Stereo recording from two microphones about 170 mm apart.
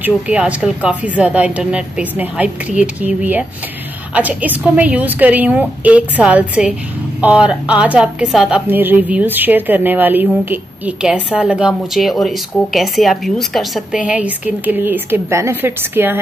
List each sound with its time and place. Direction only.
0.0 s a woman's voice: 5° right (ahead or behind)